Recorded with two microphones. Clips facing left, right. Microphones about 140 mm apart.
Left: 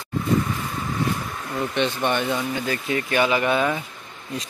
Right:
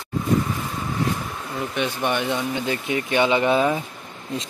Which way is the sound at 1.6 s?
10° right (ahead or behind).